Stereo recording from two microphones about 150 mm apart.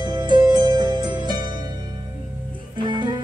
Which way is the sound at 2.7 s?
30° right (ahead or behind).